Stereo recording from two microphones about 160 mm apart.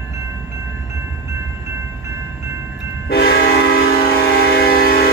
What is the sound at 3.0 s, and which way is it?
Train horn, 75° left (ahead or behind).